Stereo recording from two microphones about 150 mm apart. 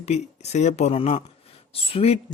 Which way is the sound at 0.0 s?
45° left (ahead or behind).